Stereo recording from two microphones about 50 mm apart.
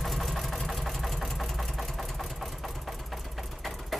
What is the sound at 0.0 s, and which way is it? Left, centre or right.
Engine, centre.